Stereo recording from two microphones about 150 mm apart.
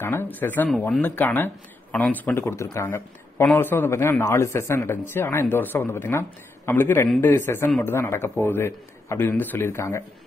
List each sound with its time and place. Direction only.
0.0 s a man's voice: 15° left (ahead or behind)